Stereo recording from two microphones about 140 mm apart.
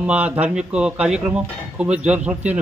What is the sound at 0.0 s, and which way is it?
Speech, 10° right (ahead or behind).